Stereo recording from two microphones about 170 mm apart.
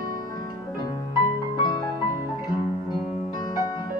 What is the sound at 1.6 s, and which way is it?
Music, 25° left (ahead or behind).